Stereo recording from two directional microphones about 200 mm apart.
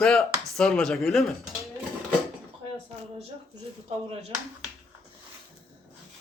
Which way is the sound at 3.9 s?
30° right (ahead or behind).